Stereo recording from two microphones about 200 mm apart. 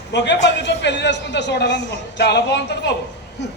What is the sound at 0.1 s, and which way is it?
A man's voice, 60° left (ahead or behind).